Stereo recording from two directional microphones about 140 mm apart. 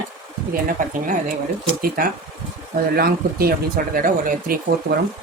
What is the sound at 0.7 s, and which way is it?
Speech, 75° right (ahead or behind).